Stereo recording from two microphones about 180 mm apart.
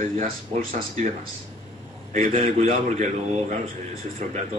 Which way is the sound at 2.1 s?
35° right (ahead or behind).